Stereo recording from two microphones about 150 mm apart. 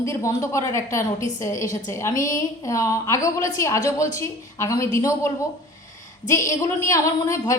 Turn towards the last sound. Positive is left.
turn(degrees=20)  # may be behind; listen again after turning